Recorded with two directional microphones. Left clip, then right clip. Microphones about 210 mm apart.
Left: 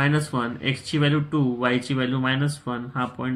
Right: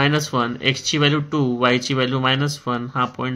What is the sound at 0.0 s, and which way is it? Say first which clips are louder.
Speech: right 5 dB; 45° right (ahead or behind).